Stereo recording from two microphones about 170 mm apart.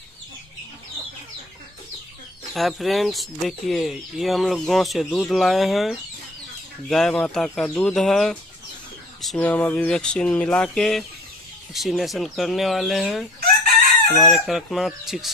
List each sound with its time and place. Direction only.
2.5 s speech: centre (ahead or behind)